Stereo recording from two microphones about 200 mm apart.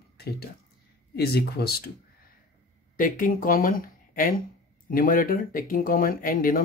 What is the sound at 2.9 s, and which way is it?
Speech, 45° left (ahead or behind).